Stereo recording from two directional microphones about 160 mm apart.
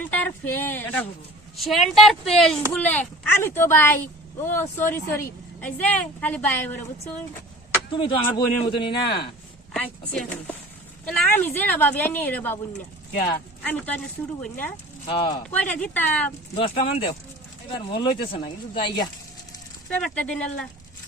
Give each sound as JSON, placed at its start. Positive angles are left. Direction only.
{"t": 0.0, "sound": "speech", "side_deg": 10}
{"t": 1.5, "sound": "speech", "side_deg": 0}
{"t": 7.9, "sound": "speech", "side_deg": 35}
{"t": 9.7, "sound": "speech", "side_deg": 5}
{"t": 13.7, "sound": "speech", "side_deg": 10}
{"t": 15.0, "sound": "speech", "side_deg": 30}
{"t": 15.4, "sound": "speech", "side_deg": 10}
{"t": 16.6, "sound": "speech", "side_deg": 35}
{"t": 19.9, "sound": "speech", "side_deg": 5}